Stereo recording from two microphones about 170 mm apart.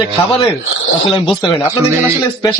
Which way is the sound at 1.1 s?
30° left (ahead or behind).